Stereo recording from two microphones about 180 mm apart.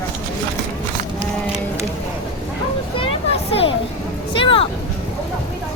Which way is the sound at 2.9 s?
35° left (ahead or behind).